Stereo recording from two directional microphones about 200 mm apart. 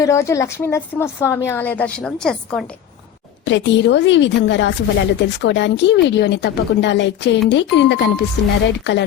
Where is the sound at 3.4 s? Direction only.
65° left (ahead or behind).